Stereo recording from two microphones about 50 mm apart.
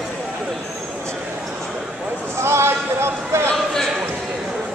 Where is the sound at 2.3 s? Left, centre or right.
Right.